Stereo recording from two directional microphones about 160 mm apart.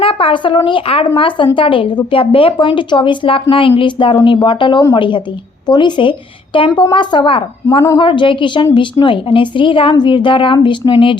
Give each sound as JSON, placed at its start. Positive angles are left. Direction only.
{"t": 0.0, "sound": "a woman's voice", "side_deg": 35}